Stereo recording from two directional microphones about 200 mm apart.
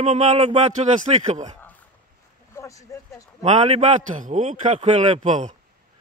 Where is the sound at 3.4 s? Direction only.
35° right (ahead or behind).